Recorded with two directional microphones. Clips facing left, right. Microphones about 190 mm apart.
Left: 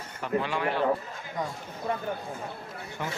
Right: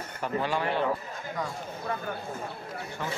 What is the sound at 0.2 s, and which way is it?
Speech, 40° right (ahead or behind).